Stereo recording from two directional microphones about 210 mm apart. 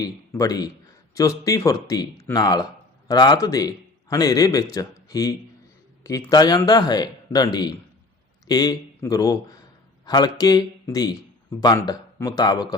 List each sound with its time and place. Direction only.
0.0 s a man's voice: 15° left (ahead or behind)